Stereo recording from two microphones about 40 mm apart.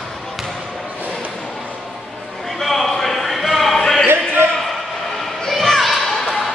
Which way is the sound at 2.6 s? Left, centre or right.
Centre.